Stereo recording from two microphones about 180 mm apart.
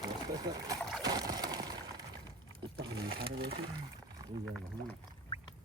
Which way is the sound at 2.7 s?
65° right (ahead or behind).